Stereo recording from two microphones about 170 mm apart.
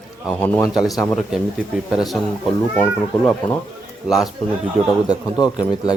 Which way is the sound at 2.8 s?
10° left (ahead or behind).